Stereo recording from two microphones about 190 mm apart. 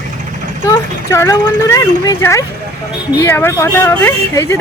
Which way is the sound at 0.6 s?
15° left (ahead or behind).